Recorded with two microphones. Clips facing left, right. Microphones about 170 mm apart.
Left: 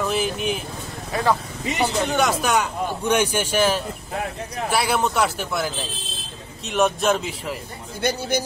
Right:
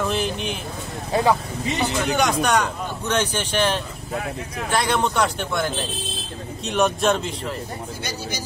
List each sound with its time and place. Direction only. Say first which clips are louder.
0.0 s a sound: left 1 dB; centre (ahead or behind)
1.1 s speech: right 4 dB; 30° right (ahead or behind)
2.0 s a man's voice: right 1 dB; centre (ahead or behind)
8.0 s speech: left 12 dB; 60° left (ahead or behind)